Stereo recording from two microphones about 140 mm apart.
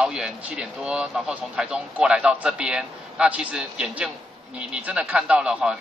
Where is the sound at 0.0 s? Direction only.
5° right (ahead or behind).